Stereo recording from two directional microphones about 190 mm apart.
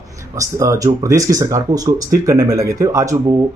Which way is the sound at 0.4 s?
15° right (ahead or behind).